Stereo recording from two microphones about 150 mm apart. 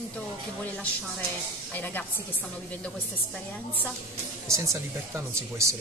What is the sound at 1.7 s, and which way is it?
Speech, 10° left (ahead or behind).